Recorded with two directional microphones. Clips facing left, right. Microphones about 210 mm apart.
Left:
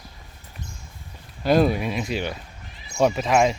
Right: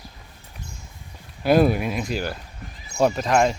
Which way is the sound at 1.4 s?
5° right (ahead or behind).